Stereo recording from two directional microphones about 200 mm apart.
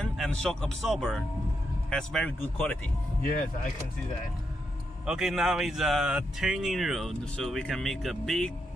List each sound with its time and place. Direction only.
0.0 s speech: 5° left (ahead or behind)
3.2 s speech: 45° left (ahead or behind)
5.0 s speech: centre (ahead or behind)